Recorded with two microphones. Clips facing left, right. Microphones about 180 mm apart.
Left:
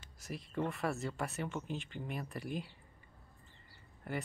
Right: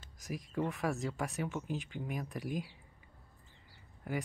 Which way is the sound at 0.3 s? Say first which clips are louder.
Right 2 dB; centre (ahead or behind).